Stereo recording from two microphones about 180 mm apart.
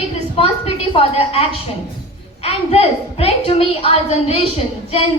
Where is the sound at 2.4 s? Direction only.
30° left (ahead or behind).